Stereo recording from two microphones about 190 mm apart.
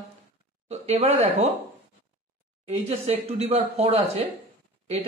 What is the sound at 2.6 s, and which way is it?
Speech, 35° right (ahead or behind).